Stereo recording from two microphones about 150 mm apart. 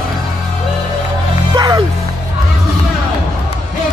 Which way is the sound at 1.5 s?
25° right (ahead or behind).